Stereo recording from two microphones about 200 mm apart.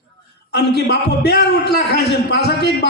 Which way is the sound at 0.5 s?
55° left (ahead or behind).